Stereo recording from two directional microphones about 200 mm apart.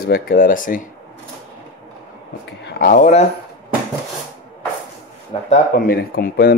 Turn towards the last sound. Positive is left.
turn(degrees=50)  # may be behind; listen again after turning